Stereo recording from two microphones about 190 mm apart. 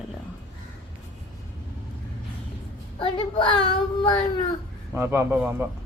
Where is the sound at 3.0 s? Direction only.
25° left (ahead or behind).